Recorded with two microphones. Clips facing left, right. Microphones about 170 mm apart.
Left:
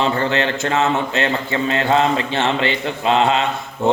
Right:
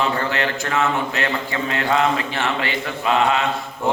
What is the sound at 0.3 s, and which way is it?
Mantra, 25° left (ahead or behind).